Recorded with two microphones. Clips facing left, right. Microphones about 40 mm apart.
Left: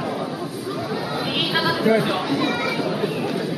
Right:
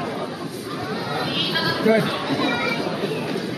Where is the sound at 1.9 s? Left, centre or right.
Centre.